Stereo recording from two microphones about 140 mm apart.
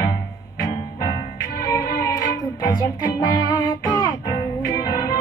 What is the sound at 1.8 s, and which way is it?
Music, 20° left (ahead or behind).